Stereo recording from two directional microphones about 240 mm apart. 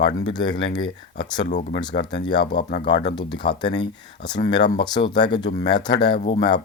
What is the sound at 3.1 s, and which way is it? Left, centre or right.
Speech, centre.